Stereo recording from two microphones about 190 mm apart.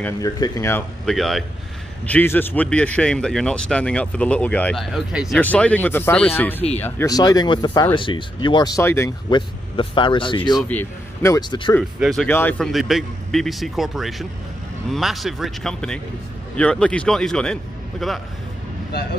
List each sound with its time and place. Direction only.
0.0 s speech: 15° left (ahead or behind)
1.0 s a man's voice: centre (ahead or behind)
9.3 s speech: 25° left (ahead or behind)
10.7 s a man's voice: 10° left (ahead or behind)
12.0 s a man's voice: centre (ahead or behind)